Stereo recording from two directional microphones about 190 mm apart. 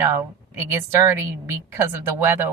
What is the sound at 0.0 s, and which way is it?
A woman's voice, 15° right (ahead or behind).